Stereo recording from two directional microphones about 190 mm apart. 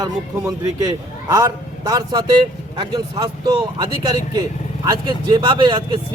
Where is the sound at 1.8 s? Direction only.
20° right (ahead or behind).